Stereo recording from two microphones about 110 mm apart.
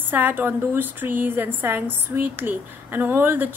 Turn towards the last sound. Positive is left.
turn(degrees=-20)  # may be behind; listen again after turning